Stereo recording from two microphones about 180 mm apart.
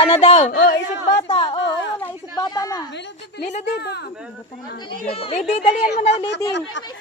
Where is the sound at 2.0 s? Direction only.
20° left (ahead or behind).